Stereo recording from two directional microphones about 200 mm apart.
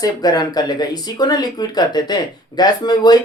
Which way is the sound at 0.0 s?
20° left (ahead or behind).